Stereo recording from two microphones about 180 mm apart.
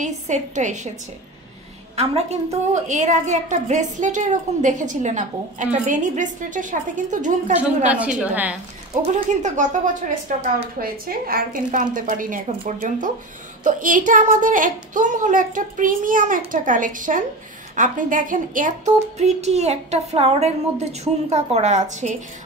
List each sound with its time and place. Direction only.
0.0 s a woman's voice: 40° right (ahead or behind)
2.0 s a woman's voice: 35° right (ahead or behind)
7.9 s a woman's voice: 5° right (ahead or behind)
9.1 s a woman's voice: 40° right (ahead or behind)